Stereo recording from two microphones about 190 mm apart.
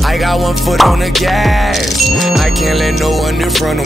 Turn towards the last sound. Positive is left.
turn(degrees=0)  # may be behind; listen again after turning